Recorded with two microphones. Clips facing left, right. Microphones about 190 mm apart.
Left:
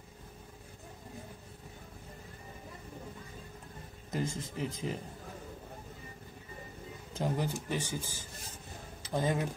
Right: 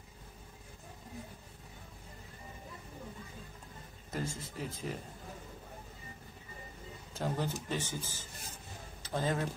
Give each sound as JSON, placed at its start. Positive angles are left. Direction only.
{"t": 4.1, "sound": "speech", "side_deg": 20}
{"t": 7.2, "sound": "speech", "side_deg": 15}